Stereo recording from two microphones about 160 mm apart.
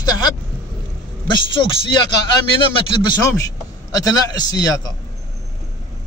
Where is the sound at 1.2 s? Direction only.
30° left (ahead or behind).